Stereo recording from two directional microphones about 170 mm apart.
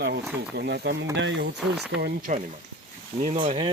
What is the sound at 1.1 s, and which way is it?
Speech, 90° right.